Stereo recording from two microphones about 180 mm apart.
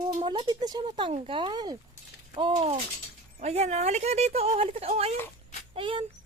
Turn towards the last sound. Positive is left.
turn(degrees=-30)  # may be behind; listen again after turning